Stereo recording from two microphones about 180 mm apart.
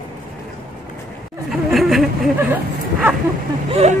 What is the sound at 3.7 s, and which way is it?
Speech, 35° right (ahead or behind).